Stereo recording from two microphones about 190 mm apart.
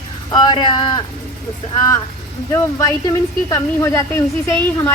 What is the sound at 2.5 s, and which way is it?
A woman's voice, 20° left (ahead or behind).